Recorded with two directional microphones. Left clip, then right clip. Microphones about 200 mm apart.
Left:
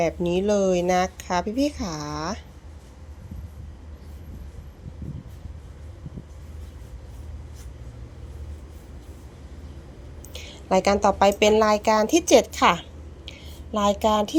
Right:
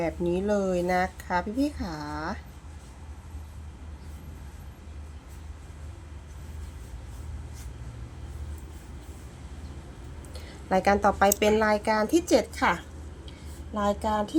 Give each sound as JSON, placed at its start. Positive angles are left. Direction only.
{"t": 0.0, "sound": "speech", "side_deg": 15}
{"t": 10.3, "sound": "speech", "side_deg": 10}
{"t": 13.7, "sound": "a sound", "side_deg": 20}